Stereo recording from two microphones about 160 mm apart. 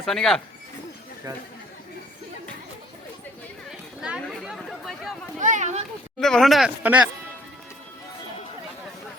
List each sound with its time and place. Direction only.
0.0 s speech: centre (ahead or behind)
4.0 s chatter: 5° right (ahead or behind)
5.4 s speech: 50° right (ahead or behind)
6.1 s speech: centre (ahead or behind)